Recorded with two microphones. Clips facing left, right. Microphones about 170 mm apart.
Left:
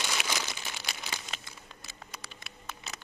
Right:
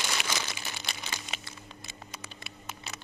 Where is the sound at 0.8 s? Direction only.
5° left (ahead or behind).